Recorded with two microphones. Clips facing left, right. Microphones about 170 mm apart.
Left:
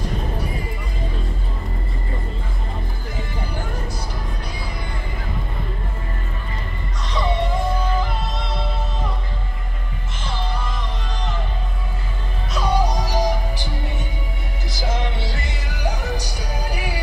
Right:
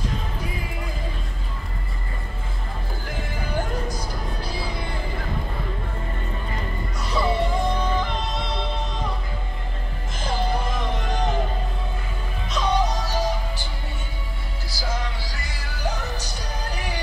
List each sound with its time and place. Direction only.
7.1 s music: 5° right (ahead or behind)
11.0 s music: 50° right (ahead or behind)
12.5 s music: 10° left (ahead or behind)
14.7 s music: 20° left (ahead or behind)